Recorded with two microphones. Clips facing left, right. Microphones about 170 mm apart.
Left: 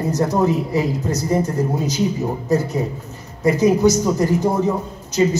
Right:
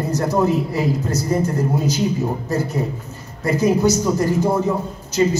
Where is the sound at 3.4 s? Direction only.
15° left (ahead or behind).